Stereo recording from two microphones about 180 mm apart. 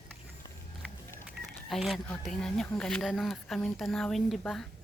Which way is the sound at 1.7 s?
Centre (ahead or behind).